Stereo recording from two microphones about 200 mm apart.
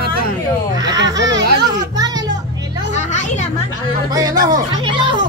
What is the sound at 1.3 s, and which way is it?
Speech, 65° right (ahead or behind).